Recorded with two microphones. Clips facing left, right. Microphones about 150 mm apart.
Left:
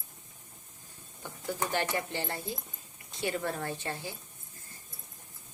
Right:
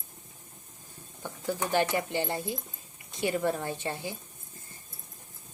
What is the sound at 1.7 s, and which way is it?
Speech, 15° right (ahead or behind).